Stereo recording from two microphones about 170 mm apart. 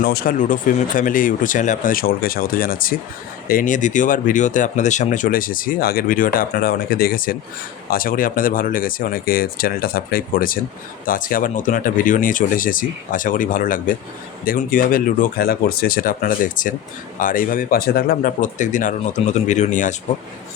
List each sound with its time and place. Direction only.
0.0 s speech: 60° left (ahead or behind); by 20.0 s 45° left (ahead or behind)